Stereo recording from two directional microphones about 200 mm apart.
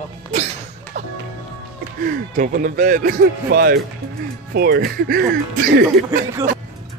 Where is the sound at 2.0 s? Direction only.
45° right (ahead or behind).